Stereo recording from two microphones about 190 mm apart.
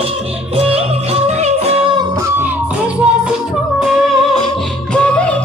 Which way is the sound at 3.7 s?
Centre (ahead or behind).